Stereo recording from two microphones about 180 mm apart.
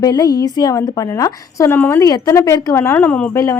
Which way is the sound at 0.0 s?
20° left (ahead or behind).